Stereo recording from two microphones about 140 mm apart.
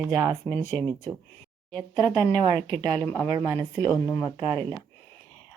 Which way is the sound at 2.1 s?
10° left (ahead or behind).